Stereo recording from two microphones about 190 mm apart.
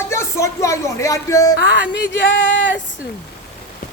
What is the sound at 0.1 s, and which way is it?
Speech, 15° left (ahead or behind).